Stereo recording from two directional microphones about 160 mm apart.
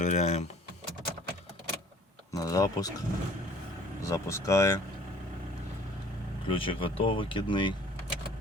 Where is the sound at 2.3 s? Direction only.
20° left (ahead or behind).